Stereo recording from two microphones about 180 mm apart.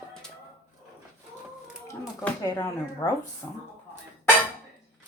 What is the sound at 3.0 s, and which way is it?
Speech, 15° left (ahead or behind).